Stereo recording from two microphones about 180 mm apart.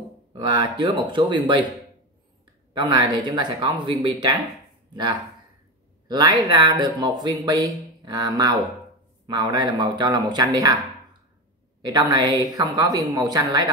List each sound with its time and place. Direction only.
0.3 s speech: 25° right (ahead or behind)
2.7 s speech: 25° right (ahead or behind)
6.0 s speech: 25° right (ahead or behind)
11.8 s speech: 20° right (ahead or behind)